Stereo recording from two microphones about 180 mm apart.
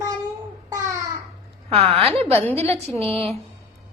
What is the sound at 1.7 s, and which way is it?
Speech, 35° right (ahead or behind).